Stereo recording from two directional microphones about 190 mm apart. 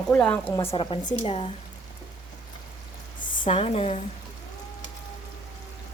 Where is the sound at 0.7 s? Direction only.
30° left (ahead or behind).